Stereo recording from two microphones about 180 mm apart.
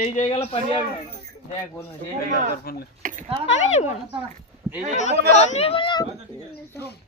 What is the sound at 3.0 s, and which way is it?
Speech, 45° right (ahead or behind).